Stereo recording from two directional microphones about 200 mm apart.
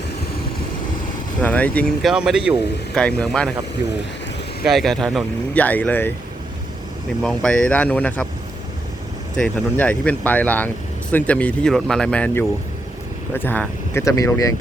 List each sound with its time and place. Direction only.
1.4 s speech: 5° left (ahead or behind)
4.6 s speech: centre (ahead or behind)
7.2 s speech: 5° left (ahead or behind)
9.4 s speech: 5° left (ahead or behind)